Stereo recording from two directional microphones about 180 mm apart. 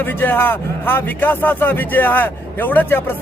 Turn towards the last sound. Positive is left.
turn(degrees=10)  # may be behind; listen again after turning